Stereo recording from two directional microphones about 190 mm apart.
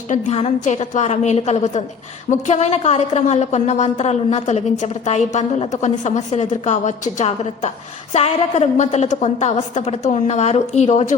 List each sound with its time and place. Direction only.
0.1 s a woman's voice: 35° left (ahead or behind)